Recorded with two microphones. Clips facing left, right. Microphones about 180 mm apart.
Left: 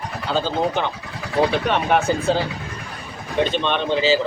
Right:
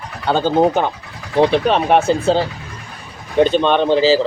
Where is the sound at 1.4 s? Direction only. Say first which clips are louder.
Right 6 dB; 30° right (ahead or behind).